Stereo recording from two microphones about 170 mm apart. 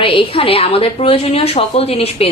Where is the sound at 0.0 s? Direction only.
30° left (ahead or behind).